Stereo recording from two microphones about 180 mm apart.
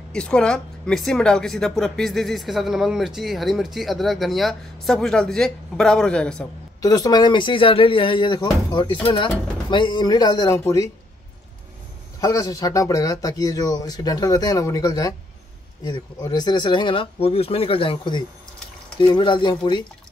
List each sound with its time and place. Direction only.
0.1 s speech: 5° left (ahead or behind)
6.8 s speech: 20° left (ahead or behind)
12.2 s speech: 20° left (ahead or behind)